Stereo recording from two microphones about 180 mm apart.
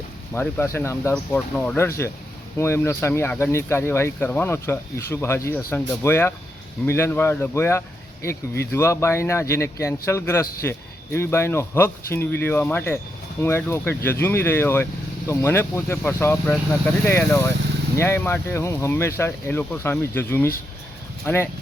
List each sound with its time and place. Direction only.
0.3 s speech: 15° left (ahead or behind)